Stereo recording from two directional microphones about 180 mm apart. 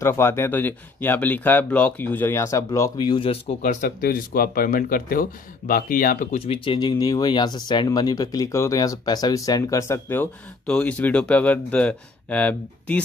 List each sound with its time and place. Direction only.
0.0 s speech: 15° left (ahead or behind); by 3.5 s 30° left (ahead or behind)
3.6 s speech: 50° left (ahead or behind)
6.4 s speech: 30° left (ahead or behind); by 13.0 s 10° left (ahead or behind)